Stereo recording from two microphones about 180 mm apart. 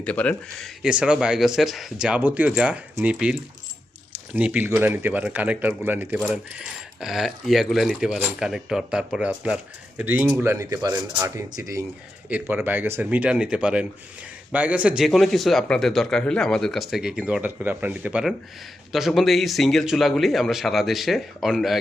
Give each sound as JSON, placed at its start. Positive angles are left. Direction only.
{"t": 0.0, "sound": "speech", "side_deg": 5}
{"t": 0.8, "sound": "speech", "side_deg": -5}
{"t": 4.4, "sound": "speech", "side_deg": -10}
{"t": 10.4, "sound": "speech", "side_deg": -15}